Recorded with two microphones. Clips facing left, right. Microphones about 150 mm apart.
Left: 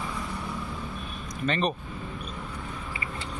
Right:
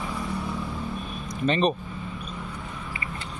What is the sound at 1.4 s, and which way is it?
Speech, 25° right (ahead or behind).